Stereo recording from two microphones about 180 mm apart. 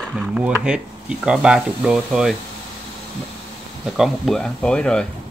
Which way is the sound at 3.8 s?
Centre (ahead or behind).